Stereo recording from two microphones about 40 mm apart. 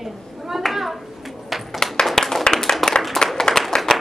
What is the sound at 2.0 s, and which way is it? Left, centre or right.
Clapping, centre.